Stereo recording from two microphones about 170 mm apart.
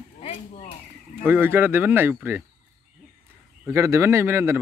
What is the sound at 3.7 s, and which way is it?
Speech, 15° right (ahead or behind).